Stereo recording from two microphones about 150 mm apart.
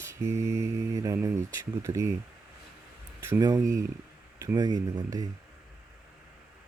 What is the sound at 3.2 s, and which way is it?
Speech, 20° right (ahead or behind).